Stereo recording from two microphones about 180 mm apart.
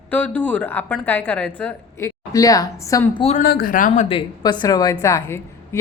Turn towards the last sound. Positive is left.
turn(degrees=15)  # may be behind; listen again after turning